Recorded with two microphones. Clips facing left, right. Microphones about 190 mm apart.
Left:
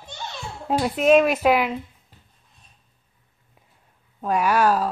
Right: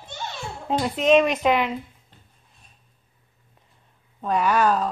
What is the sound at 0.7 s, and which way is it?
Speech, 10° left (ahead or behind).